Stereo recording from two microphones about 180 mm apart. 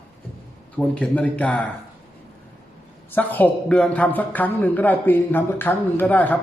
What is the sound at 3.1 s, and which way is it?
A man's voice, 10° left (ahead or behind).